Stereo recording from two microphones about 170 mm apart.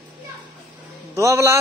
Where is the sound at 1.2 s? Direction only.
15° right (ahead or behind).